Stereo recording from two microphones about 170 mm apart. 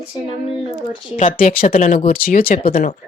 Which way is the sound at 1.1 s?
55° left (ahead or behind).